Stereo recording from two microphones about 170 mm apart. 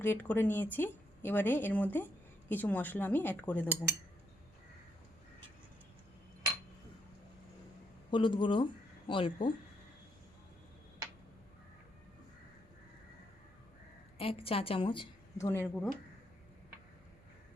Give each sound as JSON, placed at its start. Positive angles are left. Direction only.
{"t": 0.0, "sound": "speech", "side_deg": 10}
{"t": 8.1, "sound": "speech", "side_deg": 30}
{"t": 14.2, "sound": "a woman's voice", "side_deg": 35}
{"t": 15.4, "sound": "speech", "side_deg": 15}